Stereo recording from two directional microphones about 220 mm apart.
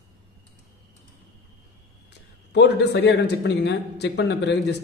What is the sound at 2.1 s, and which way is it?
A man's voice, 50° left (ahead or behind).